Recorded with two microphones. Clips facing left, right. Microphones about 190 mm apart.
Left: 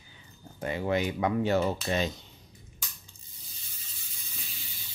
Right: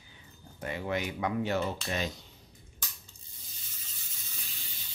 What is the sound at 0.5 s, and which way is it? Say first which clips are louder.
Speech: left 5 dB; 25° left (ahead or behind).